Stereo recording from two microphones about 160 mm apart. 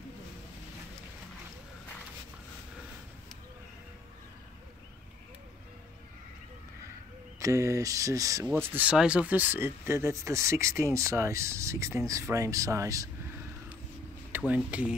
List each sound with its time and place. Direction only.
7.3 s speech: 20° right (ahead or behind)
14.3 s speech: 10° right (ahead or behind)